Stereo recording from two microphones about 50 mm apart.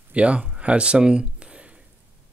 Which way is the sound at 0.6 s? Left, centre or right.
Right.